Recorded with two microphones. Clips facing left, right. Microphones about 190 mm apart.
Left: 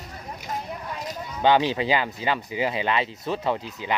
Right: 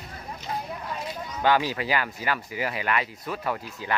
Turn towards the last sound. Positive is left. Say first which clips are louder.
# left 3 dB
turn(degrees=20)  # may be behind; listen again after turning